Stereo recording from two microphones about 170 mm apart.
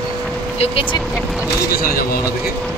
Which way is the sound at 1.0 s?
Centre (ahead or behind).